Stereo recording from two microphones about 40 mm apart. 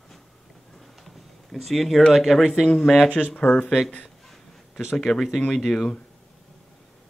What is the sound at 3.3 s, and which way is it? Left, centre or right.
Speech, left.